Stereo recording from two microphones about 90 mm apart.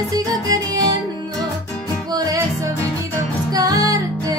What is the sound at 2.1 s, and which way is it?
Music, 40° right (ahead or behind).